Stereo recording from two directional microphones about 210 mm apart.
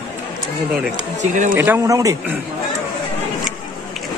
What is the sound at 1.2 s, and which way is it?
Speech, 35° right (ahead or behind).